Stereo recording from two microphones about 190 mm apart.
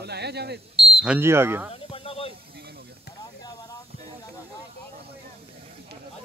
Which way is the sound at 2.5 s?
55° right (ahead or behind).